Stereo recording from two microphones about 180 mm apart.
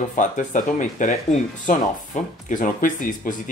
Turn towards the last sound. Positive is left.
turn(degrees=50)  # may be behind; listen again after turning